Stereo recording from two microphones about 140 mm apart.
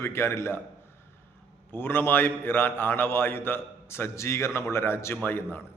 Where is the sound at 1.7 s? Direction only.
15° left (ahead or behind).